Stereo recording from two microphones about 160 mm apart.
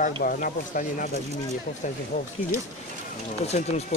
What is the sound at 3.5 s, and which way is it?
Speech, 45° left (ahead or behind).